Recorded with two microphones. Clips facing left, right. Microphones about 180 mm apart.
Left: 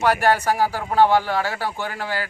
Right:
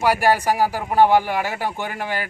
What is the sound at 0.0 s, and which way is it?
Speech, 10° right (ahead or behind).